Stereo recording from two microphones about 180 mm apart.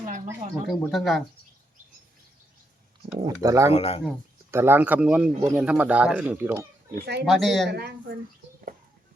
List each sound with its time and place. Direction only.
0.7 s speech: centre (ahead or behind)
3.2 s speech: 15° right (ahead or behind)
3.7 s speech: 35° left (ahead or behind)
4.5 s speech: 10° right (ahead or behind)
6.9 s speech: 65° right (ahead or behind)
7.3 s speech: centre (ahead or behind)
7.7 s speech: 65° right (ahead or behind)